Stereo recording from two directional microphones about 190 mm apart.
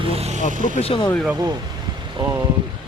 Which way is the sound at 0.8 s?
30° left (ahead or behind).